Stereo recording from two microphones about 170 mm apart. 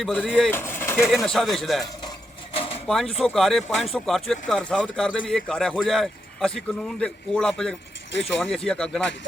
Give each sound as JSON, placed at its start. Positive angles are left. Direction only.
{"t": 0.0, "sound": "speech", "side_deg": 5}
{"t": 0.5, "sound": "speech", "side_deg": 15}
{"t": 1.1, "sound": "speech", "side_deg": 5}
{"t": 2.0, "sound": "a sound", "side_deg": 35}
{"t": 2.8, "sound": "speech", "side_deg": 0}